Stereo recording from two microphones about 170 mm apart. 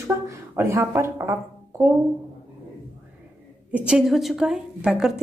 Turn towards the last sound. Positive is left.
turn(degrees=-5)  # may be behind; listen again after turning